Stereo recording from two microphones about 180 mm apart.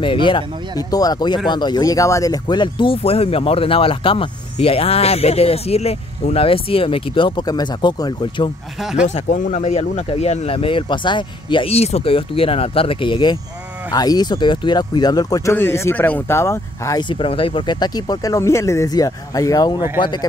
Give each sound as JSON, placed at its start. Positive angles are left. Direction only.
{"t": 0.0, "sound": "speech", "side_deg": 30}
{"t": 9.0, "sound": "speech", "side_deg": 40}